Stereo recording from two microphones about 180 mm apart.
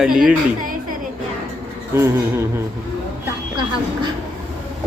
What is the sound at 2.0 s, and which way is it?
Speech, 15° right (ahead or behind).